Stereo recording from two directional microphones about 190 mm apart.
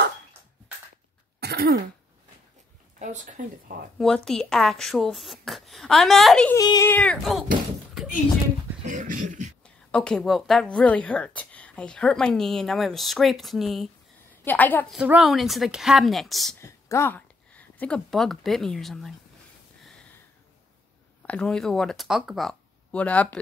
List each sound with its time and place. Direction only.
1.4 s throat clearing: 55° right (ahead or behind)
3.0 s speech: 40° right (ahead or behind)
4.0 s a woman's voice: centre (ahead or behind)
6.5 s speech: 15° left (ahead or behind)
8.8 s speech: 45° right (ahead or behind)
9.8 s a woman's voice: 5° left (ahead or behind)
15.0 s a woman's voice: 5° right (ahead or behind)
16.5 s speech: 15° left (ahead or behind)
19.8 s a sound: 5° left (ahead or behind)
21.3 s a woman's voice: 5° left (ahead or behind)